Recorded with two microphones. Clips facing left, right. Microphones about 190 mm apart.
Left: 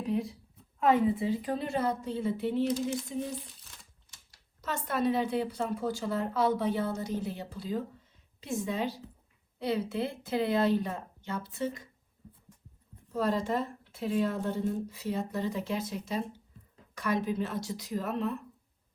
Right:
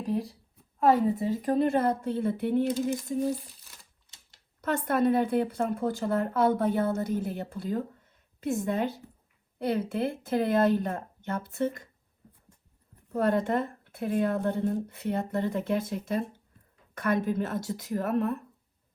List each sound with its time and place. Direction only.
0.0 s a sound: 35° right (ahead or behind)
0.8 s a woman's voice: 40° right (ahead or behind); by 2.6 s 55° right (ahead or behind)
4.6 s a woman's voice: 55° right (ahead or behind)
13.1 s a woman's voice: 55° right (ahead or behind)